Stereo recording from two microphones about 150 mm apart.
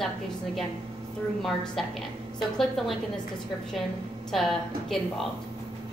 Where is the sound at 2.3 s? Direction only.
Centre (ahead or behind).